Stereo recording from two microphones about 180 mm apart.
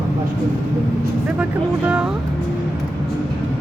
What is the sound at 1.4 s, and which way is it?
Speech, 5° right (ahead or behind).